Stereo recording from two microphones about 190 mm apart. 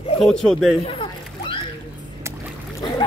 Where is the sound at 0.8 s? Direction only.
25° left (ahead or behind).